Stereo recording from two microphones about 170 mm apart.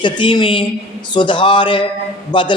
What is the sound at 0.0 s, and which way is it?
Speech, 30° left (ahead or behind).